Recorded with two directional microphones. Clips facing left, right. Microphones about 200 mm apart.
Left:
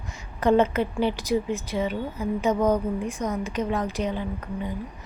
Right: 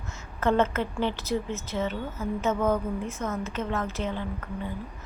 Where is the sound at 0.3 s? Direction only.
15° left (ahead or behind).